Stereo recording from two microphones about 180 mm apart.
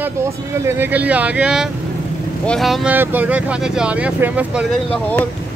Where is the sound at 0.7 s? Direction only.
10° right (ahead or behind).